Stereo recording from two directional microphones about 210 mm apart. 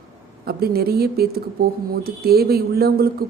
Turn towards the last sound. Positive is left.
turn(degrees=-45)  # may be behind; listen again after turning